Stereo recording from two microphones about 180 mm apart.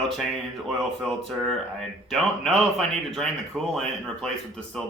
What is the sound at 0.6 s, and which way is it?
Speech, centre (ahead or behind).